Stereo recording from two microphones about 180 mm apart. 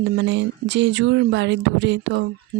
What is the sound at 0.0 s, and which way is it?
Speech, 80° right.